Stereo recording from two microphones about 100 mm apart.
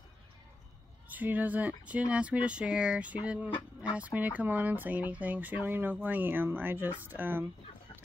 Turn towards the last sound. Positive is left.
turn(degrees=-20)  # may be behind; listen again after turning